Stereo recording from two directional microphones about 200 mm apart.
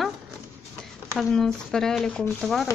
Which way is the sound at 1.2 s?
Centre (ahead or behind).